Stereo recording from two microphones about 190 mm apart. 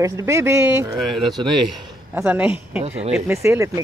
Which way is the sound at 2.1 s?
10° right (ahead or behind).